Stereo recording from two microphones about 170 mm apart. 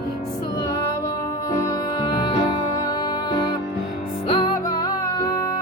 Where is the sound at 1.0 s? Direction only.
20° left (ahead or behind).